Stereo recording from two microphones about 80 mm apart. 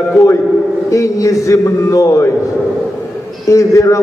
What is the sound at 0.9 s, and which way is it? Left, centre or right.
A man's voice, left.